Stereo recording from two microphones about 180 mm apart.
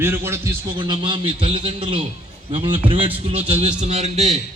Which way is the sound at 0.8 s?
25° right (ahead or behind).